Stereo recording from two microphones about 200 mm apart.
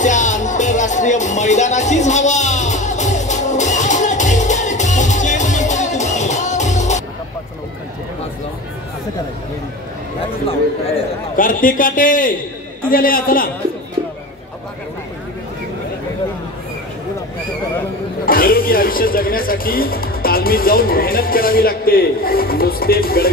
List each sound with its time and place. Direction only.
0.0 s music: 40° left (ahead or behind)
11.3 s speech: 45° left (ahead or behind)
18.2 s speech: 45° left (ahead or behind)